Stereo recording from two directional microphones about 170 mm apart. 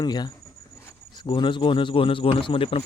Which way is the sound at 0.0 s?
25° left (ahead or behind).